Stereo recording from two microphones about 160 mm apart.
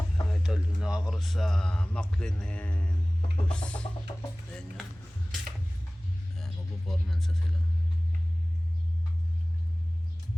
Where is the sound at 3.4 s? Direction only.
5° left (ahead or behind).